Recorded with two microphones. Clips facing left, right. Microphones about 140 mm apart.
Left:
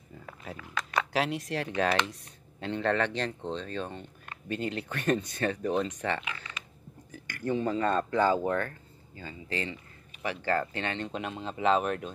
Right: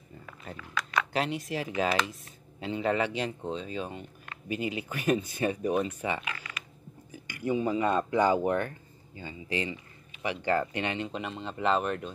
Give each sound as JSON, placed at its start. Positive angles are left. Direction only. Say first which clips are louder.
{"t": 0.5, "sound": "speech", "louder": "right 1 dB", "side_deg": 0}
{"t": 11.1, "sound": "speech", "louder": "left 1 dB", "side_deg": 0}